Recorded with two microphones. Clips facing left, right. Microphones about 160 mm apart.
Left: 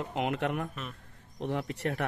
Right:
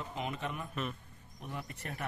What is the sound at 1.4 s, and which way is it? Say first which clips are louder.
Speech: left 11 dB; 85° left.